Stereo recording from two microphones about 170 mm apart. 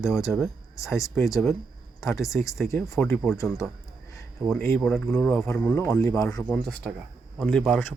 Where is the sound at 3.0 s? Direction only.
5° left (ahead or behind).